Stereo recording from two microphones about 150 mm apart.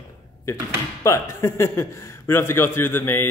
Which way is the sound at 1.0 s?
20° left (ahead or behind).